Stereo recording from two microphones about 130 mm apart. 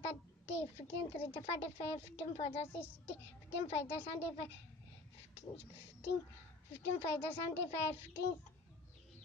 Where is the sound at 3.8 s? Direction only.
15° left (ahead or behind).